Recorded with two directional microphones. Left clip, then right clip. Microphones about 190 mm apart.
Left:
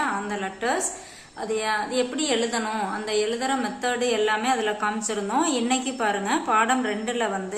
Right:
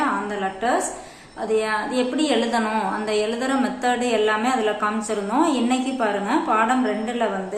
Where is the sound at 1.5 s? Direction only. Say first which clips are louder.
Right 3 dB; 15° left (ahead or behind).